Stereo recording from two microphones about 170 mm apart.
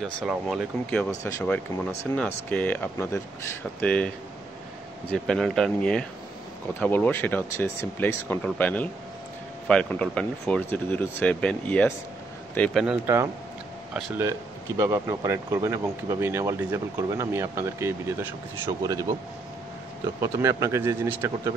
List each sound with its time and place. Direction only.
0.0 s speech: centre (ahead or behind)
5.1 s speech: 5° left (ahead or behind)
12.8 s speech: 15° right (ahead or behind)
14.8 s speech: 20° right (ahead or behind)
20.2 s speech: 20° right (ahead or behind)